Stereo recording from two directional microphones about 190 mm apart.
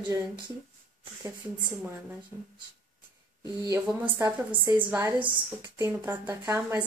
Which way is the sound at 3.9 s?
10° right (ahead or behind).